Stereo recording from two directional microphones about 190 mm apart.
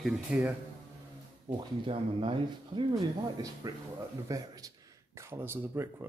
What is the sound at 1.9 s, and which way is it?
Speech, 30° right (ahead or behind).